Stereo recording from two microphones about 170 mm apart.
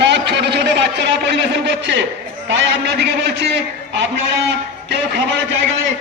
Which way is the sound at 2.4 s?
90° right.